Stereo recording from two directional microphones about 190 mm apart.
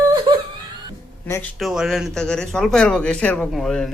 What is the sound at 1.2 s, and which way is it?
Speech, 15° left (ahead or behind).